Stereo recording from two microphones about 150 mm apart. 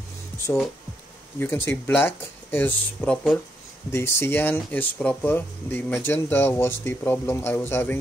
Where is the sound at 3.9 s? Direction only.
15° left (ahead or behind).